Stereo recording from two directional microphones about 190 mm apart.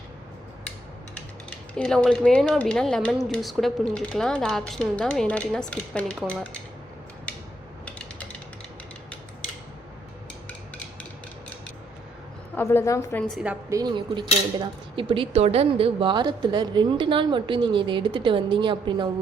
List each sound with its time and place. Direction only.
1.5 s speech: 5° left (ahead or behind)
12.5 s a woman's voice: 10° left (ahead or behind)
13.2 s a woman's voice: 5° right (ahead or behind)
13.7 s a woman's voice: 25° right (ahead or behind)